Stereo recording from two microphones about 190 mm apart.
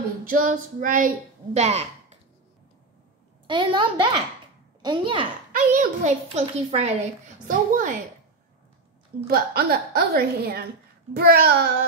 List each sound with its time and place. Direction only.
0.2 s speech: 45° right (ahead or behind)
3.4 s a child's voice: 25° right (ahead or behind)
5.5 s a child's voice: 45° right (ahead or behind)
9.3 s a woman's voice: 55° right (ahead or behind)